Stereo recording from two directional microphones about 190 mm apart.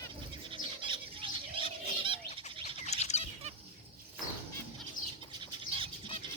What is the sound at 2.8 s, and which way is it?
Bird, 35° left (ahead or behind).